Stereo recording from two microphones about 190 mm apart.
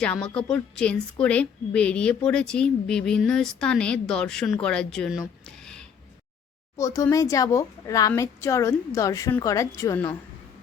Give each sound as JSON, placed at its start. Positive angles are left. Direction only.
{"t": 0.0, "sound": "a woman's voice", "side_deg": 5}
{"t": 6.7, "sound": "speech", "side_deg": 15}